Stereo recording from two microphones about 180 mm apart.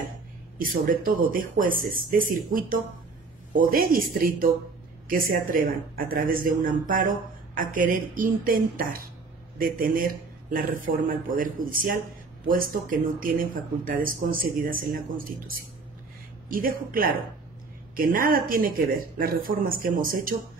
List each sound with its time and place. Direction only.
0.6 s speech: 50° right (ahead or behind)